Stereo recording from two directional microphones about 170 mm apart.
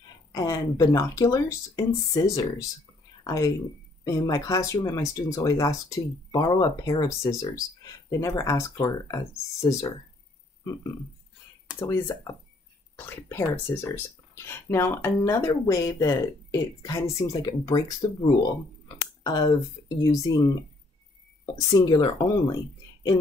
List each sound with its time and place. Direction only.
0.3 s speech: 20° left (ahead or behind)
21.7 s speech: 25° left (ahead or behind)